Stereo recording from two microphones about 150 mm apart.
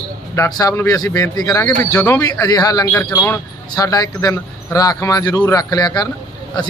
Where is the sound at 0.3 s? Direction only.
25° left (ahead or behind).